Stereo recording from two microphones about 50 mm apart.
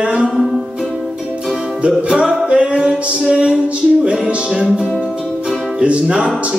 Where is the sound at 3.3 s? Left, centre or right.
Right.